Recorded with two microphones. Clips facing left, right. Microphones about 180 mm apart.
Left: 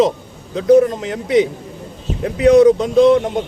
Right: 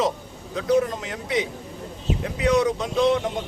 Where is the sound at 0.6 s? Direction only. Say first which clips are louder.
Left 10 dB; 35° left (ahead or behind).